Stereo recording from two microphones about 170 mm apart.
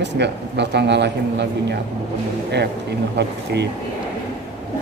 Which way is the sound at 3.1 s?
80° right.